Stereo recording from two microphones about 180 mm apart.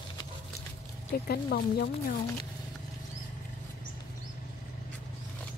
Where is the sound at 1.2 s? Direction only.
60° left (ahead or behind).